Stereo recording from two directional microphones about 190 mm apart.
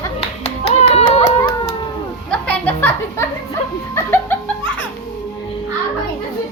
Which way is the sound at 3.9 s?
10° left (ahead or behind).